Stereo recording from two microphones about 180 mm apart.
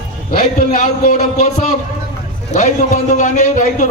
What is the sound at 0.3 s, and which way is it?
Speech, 50° left (ahead or behind).